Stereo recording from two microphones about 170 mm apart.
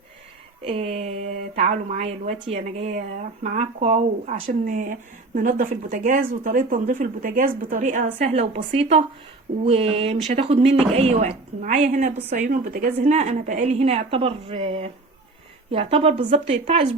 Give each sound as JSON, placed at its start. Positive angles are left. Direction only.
{"t": 0.6, "sound": "speech", "side_deg": -35}